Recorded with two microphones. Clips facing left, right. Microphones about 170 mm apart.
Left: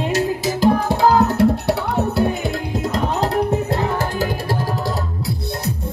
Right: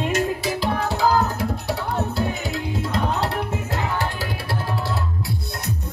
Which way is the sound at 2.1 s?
55° left (ahead or behind).